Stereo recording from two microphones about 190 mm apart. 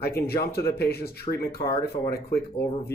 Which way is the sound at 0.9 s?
55° left (ahead or behind).